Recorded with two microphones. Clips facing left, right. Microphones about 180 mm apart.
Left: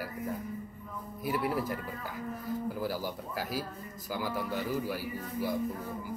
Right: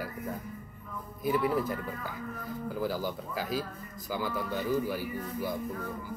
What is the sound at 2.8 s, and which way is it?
Speech, 10° left (ahead or behind).